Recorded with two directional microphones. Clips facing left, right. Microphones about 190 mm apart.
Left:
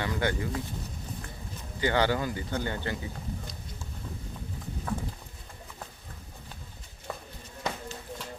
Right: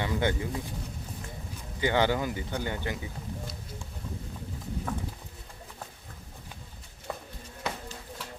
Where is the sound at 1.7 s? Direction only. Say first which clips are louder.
Even; 15° right (ahead or behind).